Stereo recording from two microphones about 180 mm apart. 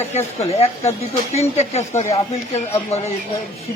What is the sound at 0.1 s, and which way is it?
Speech, 35° left (ahead or behind).